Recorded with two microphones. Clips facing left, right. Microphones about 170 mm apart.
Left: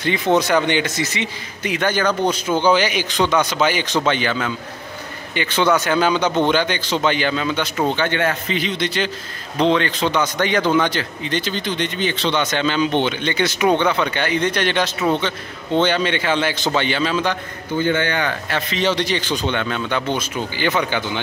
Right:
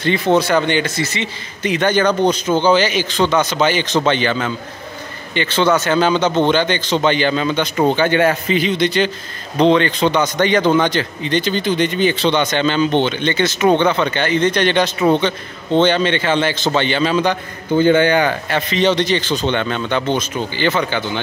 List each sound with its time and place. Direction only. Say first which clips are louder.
0.0 s a man's voice: right 2 dB; 15° left (ahead or behind)
7.9 s a man's voice: right 5 dB; 10° right (ahead or behind)
8.5 s a man's voice: right 6 dB; centre (ahead or behind)
17.9 s a man's voice: right 7 dB; 15° right (ahead or behind)
18.5 s a man's voice: right 3 dB; 5° left (ahead or behind)